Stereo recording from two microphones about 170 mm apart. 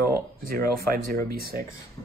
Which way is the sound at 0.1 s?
55° right (ahead or behind).